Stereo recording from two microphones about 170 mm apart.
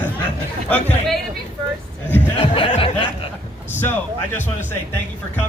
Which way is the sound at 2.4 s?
30° left (ahead or behind).